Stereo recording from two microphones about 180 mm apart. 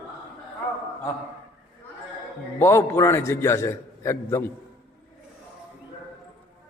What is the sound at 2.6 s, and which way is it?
A man's voice, 15° left (ahead or behind).